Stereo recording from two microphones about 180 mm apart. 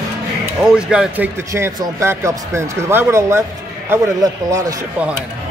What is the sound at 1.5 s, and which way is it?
A man's voice, 15° right (ahead or behind).